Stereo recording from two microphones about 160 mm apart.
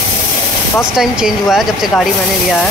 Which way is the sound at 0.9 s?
5° right (ahead or behind).